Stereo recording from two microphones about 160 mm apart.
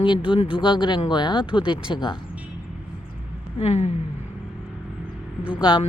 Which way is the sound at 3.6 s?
45° left (ahead or behind).